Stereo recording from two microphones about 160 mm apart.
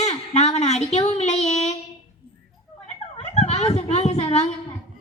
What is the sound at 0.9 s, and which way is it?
Child singing, 45° left (ahead or behind).